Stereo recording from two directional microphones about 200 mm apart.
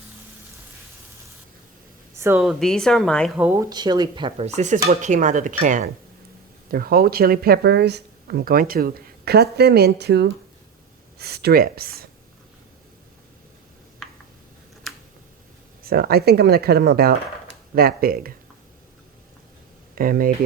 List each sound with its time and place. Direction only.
2.1 s speech: 10° right (ahead or behind)
2.4 s speech: centre (ahead or behind); by 12.0 s 50° right (ahead or behind)
15.8 s speech: 50° right (ahead or behind)
20.0 s speech: 45° right (ahead or behind)